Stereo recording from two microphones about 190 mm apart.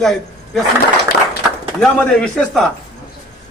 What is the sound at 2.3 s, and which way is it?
Speech, centre (ahead or behind).